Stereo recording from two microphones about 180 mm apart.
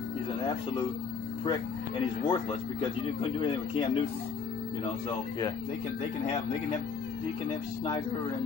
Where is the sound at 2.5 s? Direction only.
30° left (ahead or behind).